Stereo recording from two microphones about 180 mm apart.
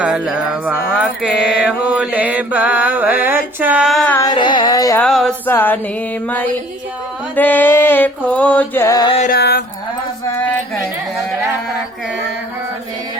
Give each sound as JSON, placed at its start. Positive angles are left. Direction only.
{"t": 0.0, "sound": "mantra", "side_deg": -5}
{"t": 4.2, "sound": "carnatic music", "side_deg": 25}
{"t": 4.9, "sound": "a sound", "side_deg": 0}
{"t": 5.5, "sound": "music", "side_deg": 10}
{"t": 9.3, "sound": "music", "side_deg": 60}